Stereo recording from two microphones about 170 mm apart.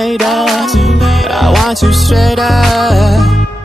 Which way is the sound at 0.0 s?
Centre (ahead or behind).